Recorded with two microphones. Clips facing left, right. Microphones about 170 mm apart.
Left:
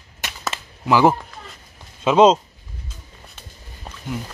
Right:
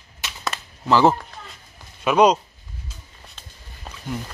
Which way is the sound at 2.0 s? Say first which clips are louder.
Left 3 dB; 25° left (ahead or behind).